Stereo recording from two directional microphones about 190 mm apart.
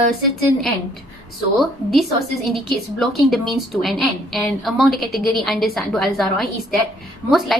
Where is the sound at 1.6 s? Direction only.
Centre (ahead or behind).